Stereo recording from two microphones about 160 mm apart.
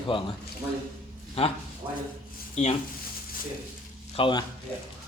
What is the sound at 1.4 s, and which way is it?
Speech, 40° left (ahead or behind).